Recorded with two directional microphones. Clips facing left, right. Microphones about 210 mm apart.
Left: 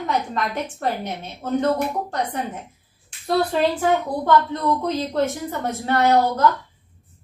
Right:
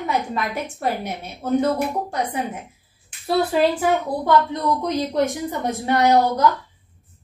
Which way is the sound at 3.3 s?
5° right (ahead or behind).